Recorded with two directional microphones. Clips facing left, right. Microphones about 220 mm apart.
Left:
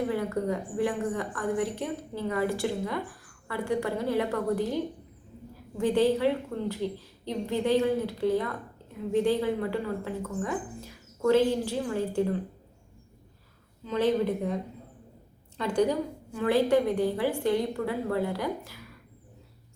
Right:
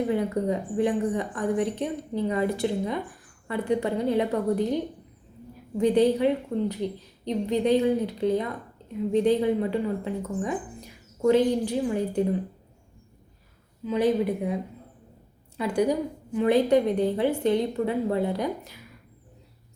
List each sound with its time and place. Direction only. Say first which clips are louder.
0.1 s a woman's voice: right 3 dB; 20° right (ahead or behind)
13.8 s a woman's voice: right 2 dB; 10° right (ahead or behind)